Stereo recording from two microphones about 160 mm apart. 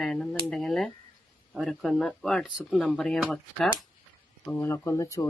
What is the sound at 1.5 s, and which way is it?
Speech, centre (ahead or behind).